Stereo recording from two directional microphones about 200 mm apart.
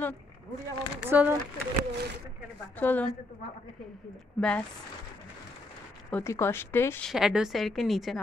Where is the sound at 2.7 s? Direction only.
10° left (ahead or behind).